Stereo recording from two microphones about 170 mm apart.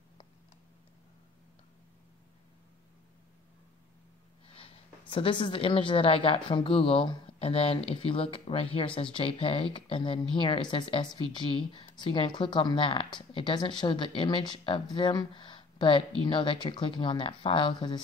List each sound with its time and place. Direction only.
5.1 s a woman's voice: 30° left (ahead or behind)